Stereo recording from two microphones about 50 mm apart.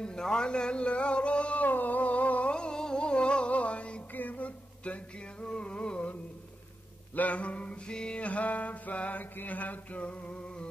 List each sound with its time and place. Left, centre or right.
0.0 s mantra: centre
1.7 s a sound: left
2.5 s music: centre
4.1 s music: left; by 6.1 s centre
7.2 s mantra: left